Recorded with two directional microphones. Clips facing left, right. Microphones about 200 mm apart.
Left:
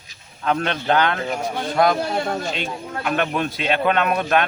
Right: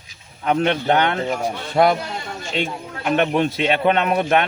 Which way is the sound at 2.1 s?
60° left (ahead or behind).